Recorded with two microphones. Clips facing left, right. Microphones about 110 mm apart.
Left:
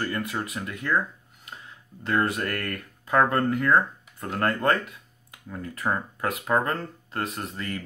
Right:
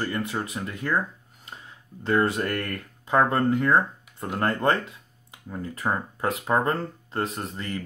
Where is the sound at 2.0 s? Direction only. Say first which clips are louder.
Right 2 dB; 30° right (ahead or behind).